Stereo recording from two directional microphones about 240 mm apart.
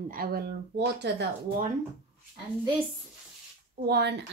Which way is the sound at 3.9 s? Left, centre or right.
Right.